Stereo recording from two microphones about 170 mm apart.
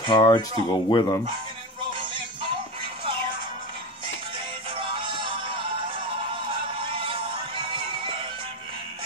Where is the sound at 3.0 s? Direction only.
30° right (ahead or behind).